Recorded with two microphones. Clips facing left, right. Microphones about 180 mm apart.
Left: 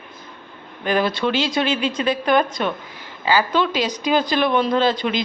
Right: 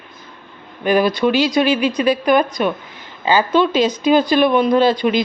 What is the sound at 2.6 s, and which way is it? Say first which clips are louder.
Speech: right 4 dB; 15° right (ahead or behind).